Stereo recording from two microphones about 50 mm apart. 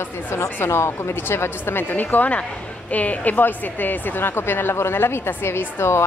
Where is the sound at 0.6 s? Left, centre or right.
Left.